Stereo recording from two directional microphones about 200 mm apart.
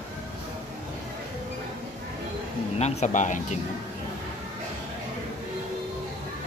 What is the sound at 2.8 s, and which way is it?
Speech, 35° left (ahead or behind).